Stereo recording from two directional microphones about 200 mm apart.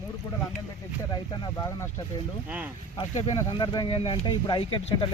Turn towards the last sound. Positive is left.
turn(degrees=25)  # may be behind; listen again after turning